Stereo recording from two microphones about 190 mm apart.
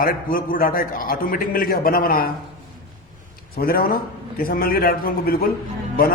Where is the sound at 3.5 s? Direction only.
50° left (ahead or behind).